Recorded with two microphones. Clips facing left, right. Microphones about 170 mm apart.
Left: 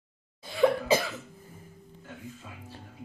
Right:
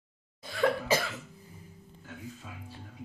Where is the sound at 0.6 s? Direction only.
10° left (ahead or behind).